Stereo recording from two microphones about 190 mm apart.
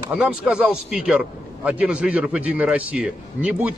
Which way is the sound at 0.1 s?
5° right (ahead or behind).